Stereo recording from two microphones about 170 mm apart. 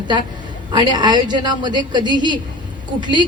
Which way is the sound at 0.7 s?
25° right (ahead or behind).